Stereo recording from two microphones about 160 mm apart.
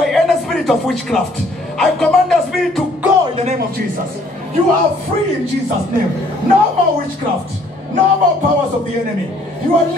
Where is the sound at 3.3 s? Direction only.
40° right (ahead or behind).